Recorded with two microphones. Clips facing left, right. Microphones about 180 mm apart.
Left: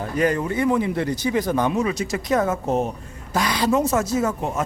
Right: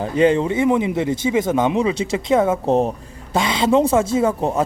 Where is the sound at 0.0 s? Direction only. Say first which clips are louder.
Right 6 dB; 25° right (ahead or behind).